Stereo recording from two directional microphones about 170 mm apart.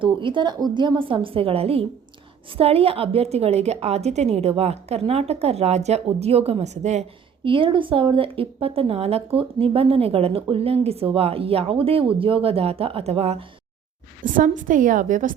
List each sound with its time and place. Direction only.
0.0 s a woman's voice: 30° right (ahead or behind)
7.4 s a woman's voice: 30° right (ahead or behind)
14.3 s a woman's voice: 50° right (ahead or behind)